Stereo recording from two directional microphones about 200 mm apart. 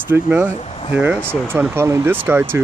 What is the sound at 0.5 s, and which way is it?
Speech, 30° left (ahead or behind).